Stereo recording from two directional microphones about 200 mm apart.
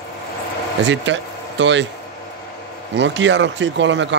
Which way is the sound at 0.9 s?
65° right (ahead or behind).